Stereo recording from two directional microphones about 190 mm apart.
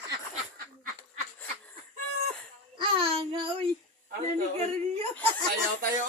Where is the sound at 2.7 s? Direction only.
25° right (ahead or behind).